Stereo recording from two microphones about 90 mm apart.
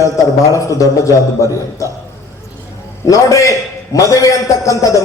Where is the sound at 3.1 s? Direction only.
35° left (ahead or behind).